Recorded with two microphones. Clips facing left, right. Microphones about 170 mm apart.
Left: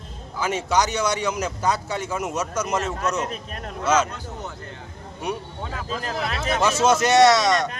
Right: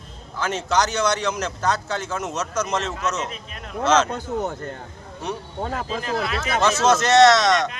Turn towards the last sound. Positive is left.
turn(degrees=10)  # may be behind; listen again after turning